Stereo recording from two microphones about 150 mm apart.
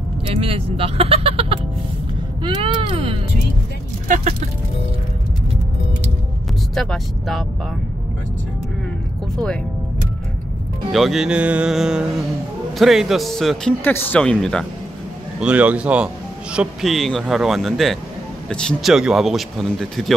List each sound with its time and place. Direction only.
0.3 s speech: 40° right (ahead or behind)
2.4 s a sound: 35° right (ahead or behind)
4.1 s vehicle: 55° right (ahead or behind)
6.7 s speech: centre (ahead or behind)
10.9 s speech: centre (ahead or behind)
15.4 s speech: 10° right (ahead or behind)